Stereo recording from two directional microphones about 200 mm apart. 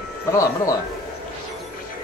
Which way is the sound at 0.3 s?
15° left (ahead or behind).